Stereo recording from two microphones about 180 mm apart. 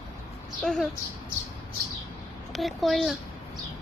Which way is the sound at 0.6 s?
5° left (ahead or behind).